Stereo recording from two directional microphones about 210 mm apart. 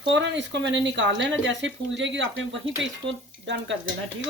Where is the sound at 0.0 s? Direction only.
60° right (ahead or behind).